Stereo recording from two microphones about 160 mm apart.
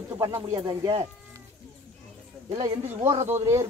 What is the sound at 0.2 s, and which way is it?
Speech, 20° right (ahead or behind).